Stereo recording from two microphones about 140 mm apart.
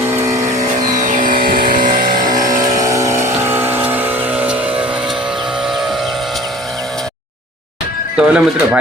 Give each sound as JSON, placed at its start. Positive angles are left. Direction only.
{"t": 0.0, "sound": "vehicle", "side_deg": -20}
{"t": 0.9, "sound": "vehicle", "side_deg": -65}
{"t": 1.9, "sound": "vehicle", "side_deg": -30}
{"t": 2.4, "sound": "vehicle", "side_deg": -65}
{"t": 2.8, "sound": "vehicle", "side_deg": -25}
{"t": 8.1, "sound": "speech", "side_deg": -10}